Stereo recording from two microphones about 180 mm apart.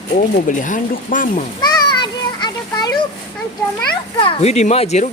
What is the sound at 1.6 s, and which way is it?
Children playing, 25° left (ahead or behind).